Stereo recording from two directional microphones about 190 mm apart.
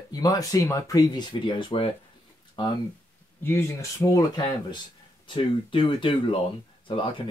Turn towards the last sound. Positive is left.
turn(degrees=25)  # may be behind; listen again after turning